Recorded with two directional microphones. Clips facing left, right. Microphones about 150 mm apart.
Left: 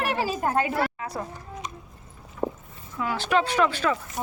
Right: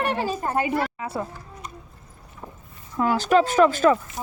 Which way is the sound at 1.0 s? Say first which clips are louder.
Right 3 dB; 25° right (ahead or behind).